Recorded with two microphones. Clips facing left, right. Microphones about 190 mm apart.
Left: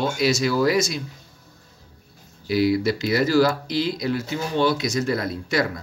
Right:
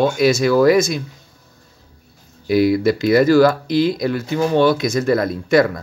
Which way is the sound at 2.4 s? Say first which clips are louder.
Right 5 dB; 50° right (ahead or behind).